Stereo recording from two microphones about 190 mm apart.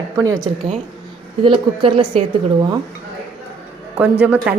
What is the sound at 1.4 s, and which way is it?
Speech, 25° right (ahead or behind).